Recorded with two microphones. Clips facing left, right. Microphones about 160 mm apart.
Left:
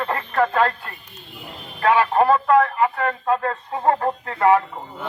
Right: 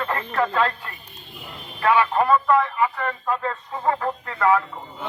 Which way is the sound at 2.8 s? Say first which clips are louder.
Left 3 dB; 50° left (ahead or behind).